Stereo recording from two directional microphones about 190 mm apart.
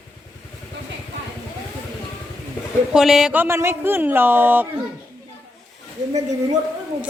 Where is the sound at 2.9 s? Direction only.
Centre (ahead or behind).